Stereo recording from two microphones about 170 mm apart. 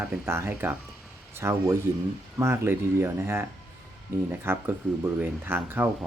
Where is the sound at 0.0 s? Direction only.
15° right (ahead or behind).